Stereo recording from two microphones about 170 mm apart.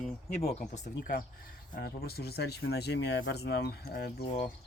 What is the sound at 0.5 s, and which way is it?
Speech, 45° left (ahead or behind).